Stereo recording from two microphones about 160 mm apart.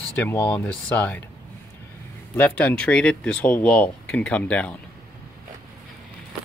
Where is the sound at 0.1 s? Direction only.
10° left (ahead or behind).